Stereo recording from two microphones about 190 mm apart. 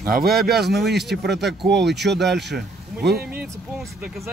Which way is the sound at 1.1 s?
60° right (ahead or behind).